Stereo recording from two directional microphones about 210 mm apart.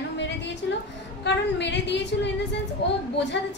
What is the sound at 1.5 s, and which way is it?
A woman's voice, 55° left (ahead or behind).